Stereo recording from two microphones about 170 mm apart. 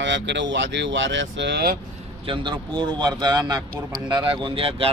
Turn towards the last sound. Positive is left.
turn(degrees=-35)  # may be behind; listen again after turning